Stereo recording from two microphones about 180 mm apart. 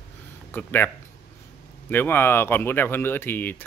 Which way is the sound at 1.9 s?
10° left (ahead or behind).